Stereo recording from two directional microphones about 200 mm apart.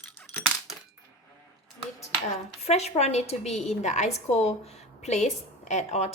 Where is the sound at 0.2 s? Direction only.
5° left (ahead or behind).